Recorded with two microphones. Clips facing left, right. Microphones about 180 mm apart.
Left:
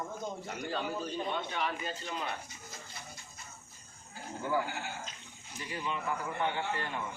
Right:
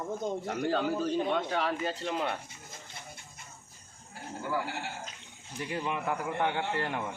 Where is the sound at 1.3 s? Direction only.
80° right.